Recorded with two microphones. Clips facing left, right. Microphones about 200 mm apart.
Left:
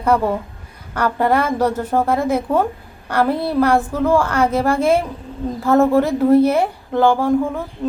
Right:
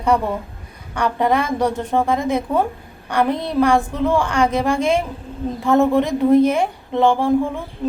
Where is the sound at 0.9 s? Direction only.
5° left (ahead or behind).